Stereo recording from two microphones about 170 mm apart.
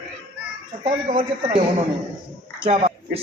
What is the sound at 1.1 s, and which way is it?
Speech, 55° right (ahead or behind).